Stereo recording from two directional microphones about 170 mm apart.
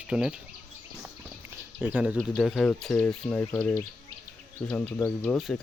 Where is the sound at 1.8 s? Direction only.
10° right (ahead or behind).